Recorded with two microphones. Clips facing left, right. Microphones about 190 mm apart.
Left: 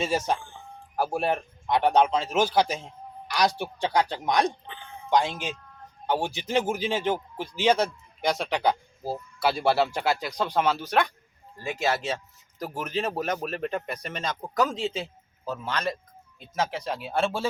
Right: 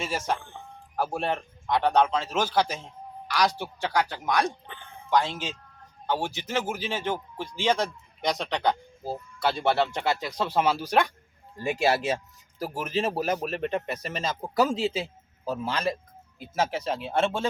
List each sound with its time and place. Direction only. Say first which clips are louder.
0.0 s speech: left 3 dB; 20° left (ahead or behind)
0.3 s speech: right 1 dB; 60° right (ahead or behind)
0.9 s a man's voice: left 2 dB; 10° left (ahead or behind)
6.1 s a man's voice: left 2 dB; 10° left (ahead or behind)